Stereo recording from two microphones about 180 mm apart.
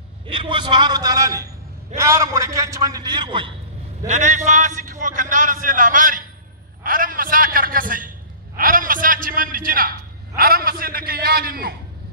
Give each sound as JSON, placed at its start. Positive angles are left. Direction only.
{"t": 0.3, "sound": "a man's voice", "side_deg": -30}
{"t": 4.1, "sound": "a man's voice", "side_deg": -40}